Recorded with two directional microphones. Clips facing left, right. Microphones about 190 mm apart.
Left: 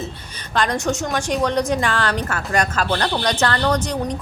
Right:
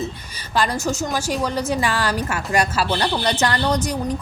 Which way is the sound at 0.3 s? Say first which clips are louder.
Left 1 dB; 5° right (ahead or behind).